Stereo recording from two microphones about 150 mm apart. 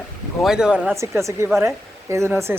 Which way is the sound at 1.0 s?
20° right (ahead or behind).